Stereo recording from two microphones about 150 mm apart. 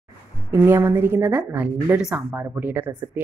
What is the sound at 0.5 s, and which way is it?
Speech, 15° right (ahead or behind).